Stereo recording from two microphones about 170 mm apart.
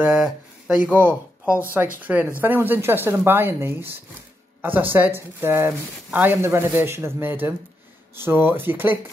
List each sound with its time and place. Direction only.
0.0 s speech: 5° right (ahead or behind)